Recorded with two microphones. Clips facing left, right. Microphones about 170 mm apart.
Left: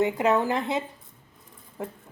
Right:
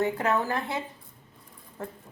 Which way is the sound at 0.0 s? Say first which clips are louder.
Left 4 dB; 15° left (ahead or behind).